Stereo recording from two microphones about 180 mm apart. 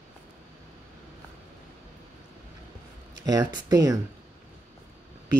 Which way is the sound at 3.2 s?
20° right (ahead or behind).